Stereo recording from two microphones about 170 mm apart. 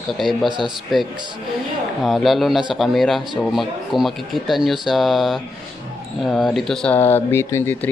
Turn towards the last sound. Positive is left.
turn(degrees=15)  # may be behind; listen again after turning